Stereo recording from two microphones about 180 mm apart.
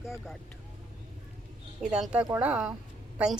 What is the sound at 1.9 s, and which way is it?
Speech, 5° right (ahead or behind).